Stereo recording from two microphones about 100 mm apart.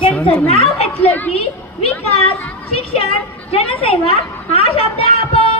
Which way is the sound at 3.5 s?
75° left (ahead or behind).